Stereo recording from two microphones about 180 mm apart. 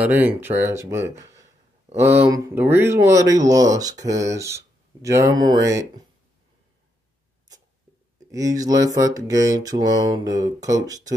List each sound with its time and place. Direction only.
0.0 s speech: 10° right (ahead or behind)
8.3 s mantra: 20° right (ahead or behind)